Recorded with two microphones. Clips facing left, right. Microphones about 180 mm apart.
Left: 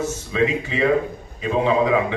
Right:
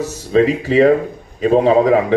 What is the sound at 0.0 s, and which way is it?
A man's voice, 35° right (ahead or behind).